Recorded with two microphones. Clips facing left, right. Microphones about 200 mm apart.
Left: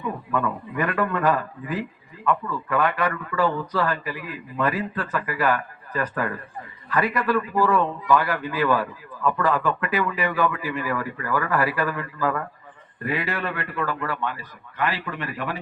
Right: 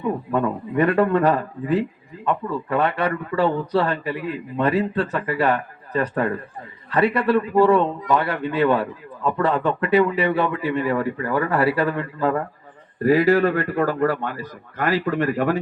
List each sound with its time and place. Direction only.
0.0 s a man's voice: 35° right (ahead or behind)